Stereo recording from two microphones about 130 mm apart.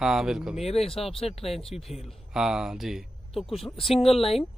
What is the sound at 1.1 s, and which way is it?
Speech, 50° left (ahead or behind).